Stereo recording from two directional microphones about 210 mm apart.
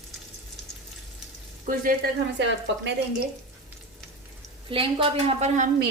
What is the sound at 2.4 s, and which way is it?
Speech, 60° right (ahead or behind).